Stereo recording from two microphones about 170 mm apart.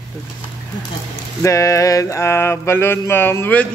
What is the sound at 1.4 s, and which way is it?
A man's voice, 20° left (ahead or behind).